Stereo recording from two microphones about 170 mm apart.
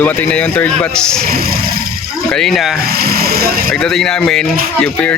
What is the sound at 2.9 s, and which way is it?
Speech, 65° right (ahead or behind).